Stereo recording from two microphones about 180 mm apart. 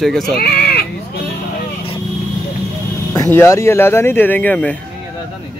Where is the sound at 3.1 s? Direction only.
15° left (ahead or behind).